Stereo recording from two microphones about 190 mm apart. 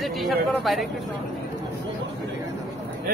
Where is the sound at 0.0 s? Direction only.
Centre (ahead or behind).